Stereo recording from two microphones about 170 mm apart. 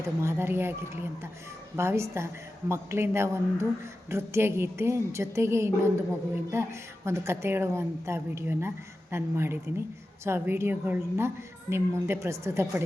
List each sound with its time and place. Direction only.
0.2 s a woman's voice: 15° right (ahead or behind)
1.7 s a woman's voice: 15° right (ahead or behind)